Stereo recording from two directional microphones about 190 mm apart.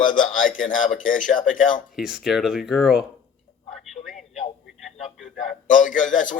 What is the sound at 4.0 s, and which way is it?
Speech, 25° left (ahead or behind).